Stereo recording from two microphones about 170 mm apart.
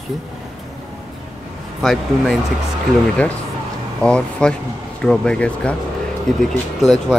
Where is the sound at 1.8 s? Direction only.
Centre (ahead or behind).